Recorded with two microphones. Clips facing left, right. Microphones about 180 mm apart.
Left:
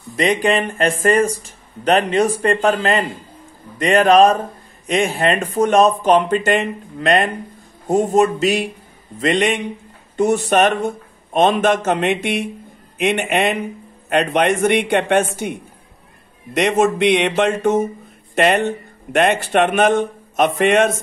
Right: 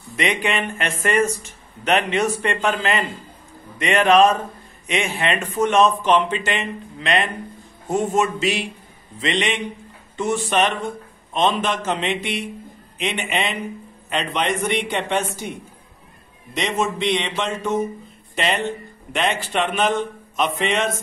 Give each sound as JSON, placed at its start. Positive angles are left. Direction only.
{"t": 0.1, "sound": "a man's voice", "side_deg": 35}
{"t": 16.5, "sound": "a man's voice", "side_deg": 55}